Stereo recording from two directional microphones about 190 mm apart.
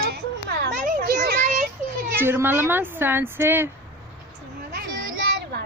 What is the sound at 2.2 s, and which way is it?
A woman's voice, 10° right (ahead or behind).